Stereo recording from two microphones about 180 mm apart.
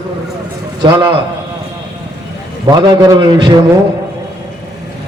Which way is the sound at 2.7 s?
20° right (ahead or behind).